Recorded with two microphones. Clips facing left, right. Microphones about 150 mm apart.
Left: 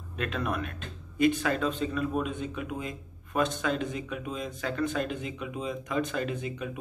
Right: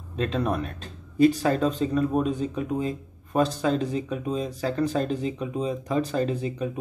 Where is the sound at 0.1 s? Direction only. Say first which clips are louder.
Right 6 dB; 30° right (ahead or behind).